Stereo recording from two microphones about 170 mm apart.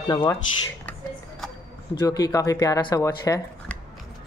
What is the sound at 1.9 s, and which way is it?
Speech, 20° left (ahead or behind).